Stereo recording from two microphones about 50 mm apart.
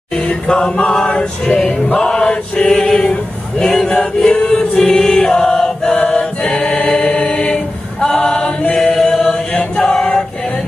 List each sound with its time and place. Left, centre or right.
0.1 s male singing: left